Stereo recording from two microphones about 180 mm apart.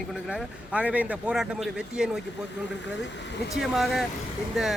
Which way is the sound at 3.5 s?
Centre (ahead or behind).